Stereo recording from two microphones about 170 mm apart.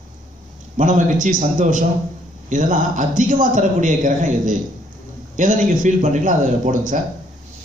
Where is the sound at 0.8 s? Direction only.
50° right (ahead or behind).